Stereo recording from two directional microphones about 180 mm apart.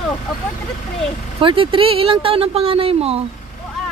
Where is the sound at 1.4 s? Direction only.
30° right (ahead or behind).